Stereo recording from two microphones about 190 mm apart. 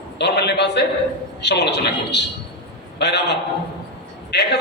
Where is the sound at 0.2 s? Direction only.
65° left (ahead or behind).